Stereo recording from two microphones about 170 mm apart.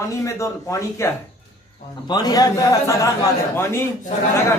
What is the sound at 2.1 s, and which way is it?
A man's voice, 25° left (ahead or behind).